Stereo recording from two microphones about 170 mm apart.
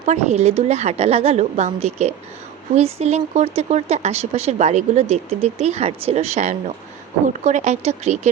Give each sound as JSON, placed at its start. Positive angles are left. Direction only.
{"t": 0.0, "sound": "speech", "side_deg": -40}